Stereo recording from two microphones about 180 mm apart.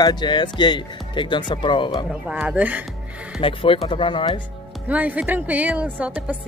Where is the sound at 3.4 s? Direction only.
30° left (ahead or behind).